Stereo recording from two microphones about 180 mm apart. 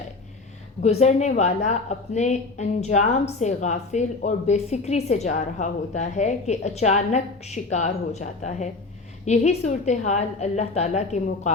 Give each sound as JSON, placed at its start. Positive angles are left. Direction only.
{"t": 0.8, "sound": "speech", "side_deg": 40}